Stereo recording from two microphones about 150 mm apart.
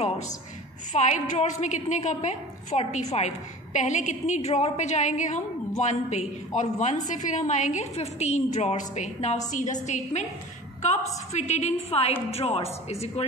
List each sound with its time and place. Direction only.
0.9 s a woman's voice: 50° left (ahead or behind)